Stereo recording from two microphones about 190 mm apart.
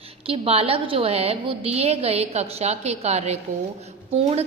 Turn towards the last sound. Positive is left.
turn(degrees=-30)  # may be behind; listen again after turning